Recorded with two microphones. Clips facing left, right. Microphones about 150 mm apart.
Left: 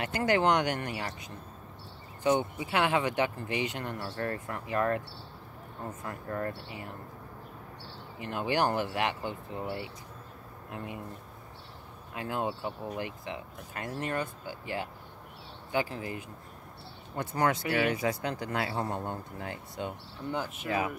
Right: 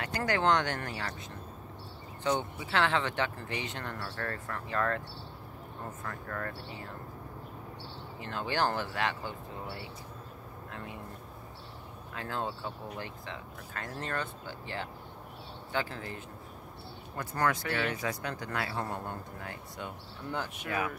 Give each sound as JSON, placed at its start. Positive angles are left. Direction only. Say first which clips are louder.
{"t": 0.0, "sound": "speech", "louder": "left 3 dB", "side_deg": 20}
{"t": 2.2, "sound": "speech", "louder": "left 4 dB", "side_deg": 15}
{"t": 6.0, "sound": "speech", "louder": "left 5 dB", "side_deg": 25}
{"t": 8.2, "sound": "speech", "louder": "left 3 dB", "side_deg": 15}
{"t": 12.1, "sound": "speech", "louder": "left 3 dB", "side_deg": 15}
{"t": 17.2, "sound": "speech", "louder": "left 2 dB", "side_deg": 25}
{"t": 17.6, "sound": "speech", "louder": "left 5 dB", "side_deg": 10}
{"t": 18.0, "sound": "speech", "louder": "left 4 dB", "side_deg": 25}
{"t": 20.2, "sound": "speech", "louder": "left 3 dB", "side_deg": 5}
{"t": 20.6, "sound": "speech", "louder": "left 3 dB", "side_deg": 30}